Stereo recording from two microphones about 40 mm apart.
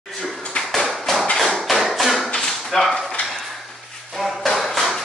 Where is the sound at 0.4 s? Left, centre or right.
Left.